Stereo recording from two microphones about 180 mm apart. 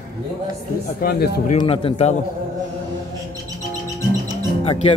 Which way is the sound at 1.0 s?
60° left (ahead or behind).